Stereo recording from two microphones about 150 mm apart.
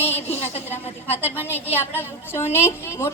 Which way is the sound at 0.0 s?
15° left (ahead or behind).